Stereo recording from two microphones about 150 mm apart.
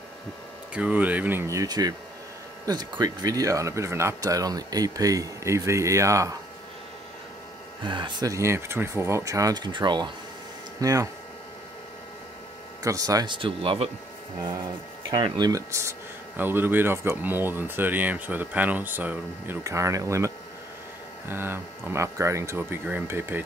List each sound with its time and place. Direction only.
0.7 s speech: 10° right (ahead or behind)
7.8 s speech: 30° right (ahead or behind)
12.8 s speech: 25° right (ahead or behind); by 13.8 s 40° right (ahead or behind)
15.0 s speech: 30° right (ahead or behind)